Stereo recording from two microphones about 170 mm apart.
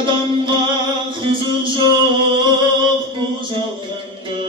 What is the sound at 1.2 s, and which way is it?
Music, 30° right (ahead or behind).